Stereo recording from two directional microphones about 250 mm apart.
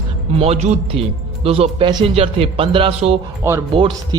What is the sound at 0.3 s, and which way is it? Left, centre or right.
Speech, right.